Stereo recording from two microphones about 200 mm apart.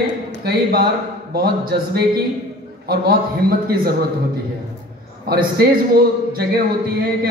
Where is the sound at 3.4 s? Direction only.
50° right (ahead or behind).